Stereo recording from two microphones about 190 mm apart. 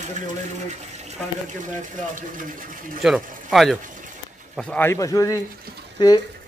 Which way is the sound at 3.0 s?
Centre (ahead or behind).